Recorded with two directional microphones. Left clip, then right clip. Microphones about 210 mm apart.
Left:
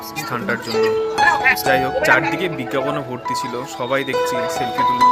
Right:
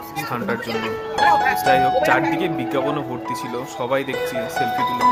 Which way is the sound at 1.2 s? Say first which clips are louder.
Left 1 dB; 45° right (ahead or behind).